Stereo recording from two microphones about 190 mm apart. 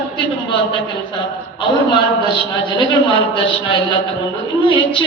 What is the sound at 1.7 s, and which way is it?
A man's voice, 25° left (ahead or behind).